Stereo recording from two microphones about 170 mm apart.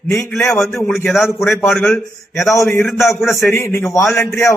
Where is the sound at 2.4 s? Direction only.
15° left (ahead or behind).